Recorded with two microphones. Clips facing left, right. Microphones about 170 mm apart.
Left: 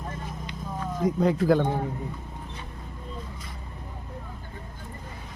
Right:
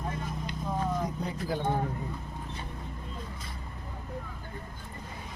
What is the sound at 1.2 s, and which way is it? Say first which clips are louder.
Speech: left 12 dB; 90° left.